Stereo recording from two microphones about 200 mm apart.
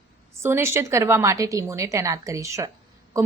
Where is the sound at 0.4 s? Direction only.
15° right (ahead or behind).